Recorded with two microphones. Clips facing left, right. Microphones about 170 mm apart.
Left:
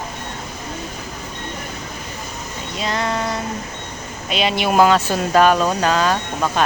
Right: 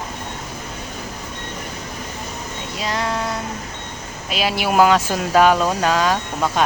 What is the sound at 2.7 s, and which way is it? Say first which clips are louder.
Music: left 1 dB; 10° right (ahead or behind).